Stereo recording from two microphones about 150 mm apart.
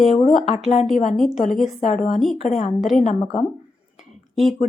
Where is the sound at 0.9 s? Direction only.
55° left (ahead or behind).